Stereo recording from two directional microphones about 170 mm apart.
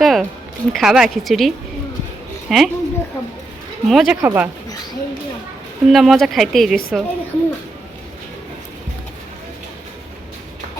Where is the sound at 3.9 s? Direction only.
Centre (ahead or behind).